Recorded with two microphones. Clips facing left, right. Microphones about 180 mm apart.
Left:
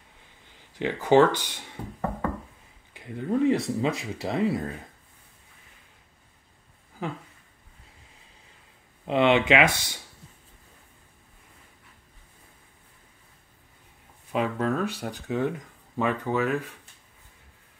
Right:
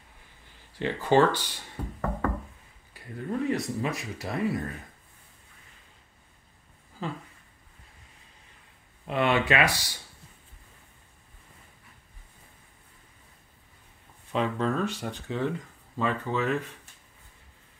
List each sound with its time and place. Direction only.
0.7 s speech: 15° left (ahead or behind)
9.0 s speech: 20° left (ahead or behind)
14.3 s speech: 5° left (ahead or behind)